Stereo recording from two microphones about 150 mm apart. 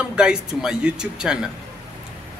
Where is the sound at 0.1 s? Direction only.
5° right (ahead or behind).